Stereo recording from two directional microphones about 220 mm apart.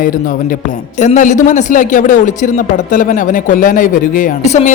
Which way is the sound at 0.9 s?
35° left (ahead or behind).